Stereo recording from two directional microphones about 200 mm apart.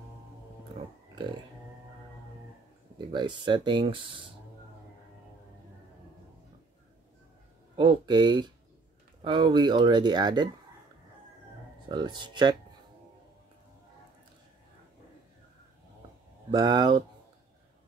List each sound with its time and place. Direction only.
3.1 s speech: 25° right (ahead or behind)
7.7 s speech: 25° right (ahead or behind)
11.9 s speech: 20° right (ahead or behind)
16.4 s speech: 20° right (ahead or behind)